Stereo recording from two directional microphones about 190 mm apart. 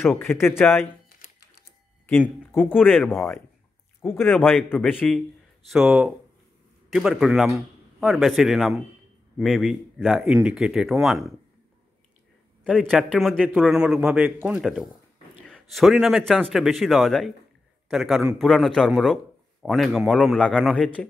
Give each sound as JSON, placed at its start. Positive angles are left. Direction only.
{"t": 0.0, "sound": "a man's voice", "side_deg": 10}
{"t": 1.0, "sound": "typing", "side_deg": 55}
{"t": 2.0, "sound": "a man's voice", "side_deg": 10}
{"t": 12.6, "sound": "a man's voice", "side_deg": -5}